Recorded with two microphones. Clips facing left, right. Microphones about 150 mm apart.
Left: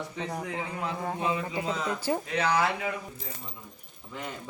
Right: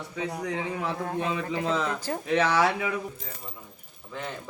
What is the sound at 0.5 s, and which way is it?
Speech, 70° right (ahead or behind).